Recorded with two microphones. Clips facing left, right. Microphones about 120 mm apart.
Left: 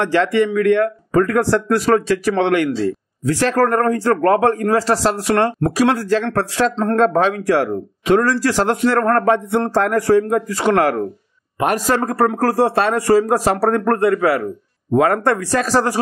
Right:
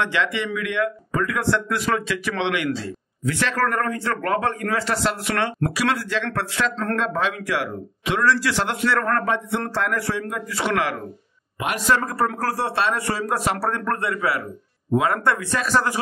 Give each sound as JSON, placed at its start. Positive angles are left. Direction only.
{"t": 0.0, "sound": "speech", "side_deg": 45}